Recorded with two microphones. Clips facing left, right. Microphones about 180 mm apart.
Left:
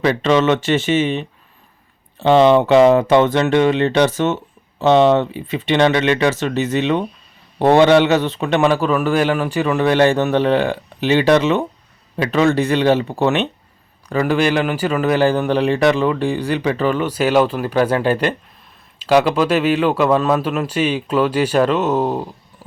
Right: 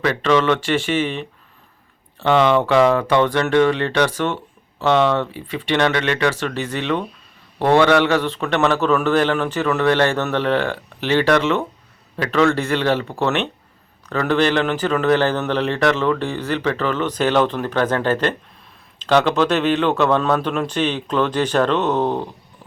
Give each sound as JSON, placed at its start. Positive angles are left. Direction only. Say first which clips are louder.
{"t": 0.0, "sound": "a man's voice", "louder": "left 2 dB", "side_deg": 20}